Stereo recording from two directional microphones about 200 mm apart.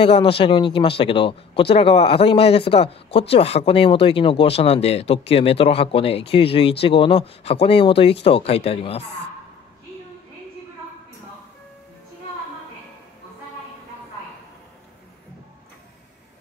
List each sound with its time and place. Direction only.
0.0 s speech: 25° left (ahead or behind)